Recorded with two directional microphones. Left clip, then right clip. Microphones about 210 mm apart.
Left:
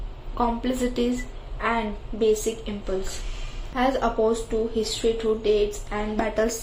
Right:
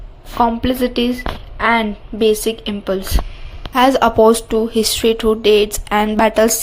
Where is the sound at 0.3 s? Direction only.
30° right (ahead or behind).